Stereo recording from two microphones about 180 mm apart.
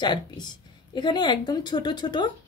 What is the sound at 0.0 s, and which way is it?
A woman's voice, 25° left (ahead or behind).